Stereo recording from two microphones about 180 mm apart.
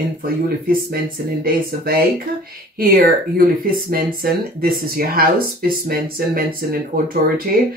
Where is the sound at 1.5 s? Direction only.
55° right (ahead or behind).